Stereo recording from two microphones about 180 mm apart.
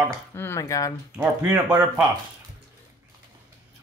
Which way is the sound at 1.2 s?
10° right (ahead or behind).